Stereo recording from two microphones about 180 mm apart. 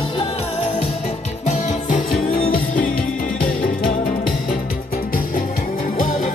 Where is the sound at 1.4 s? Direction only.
45° left (ahead or behind).